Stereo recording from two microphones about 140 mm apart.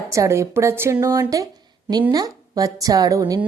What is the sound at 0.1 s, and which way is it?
A woman's voice, 20° right (ahead or behind).